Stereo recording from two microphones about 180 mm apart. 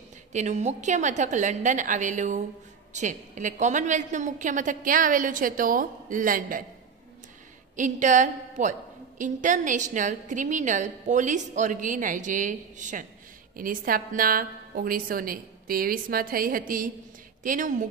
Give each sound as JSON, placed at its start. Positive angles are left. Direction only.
{"t": 0.3, "sound": "a woman's voice", "side_deg": -40}
{"t": 7.7, "sound": "a woman's voice", "side_deg": -45}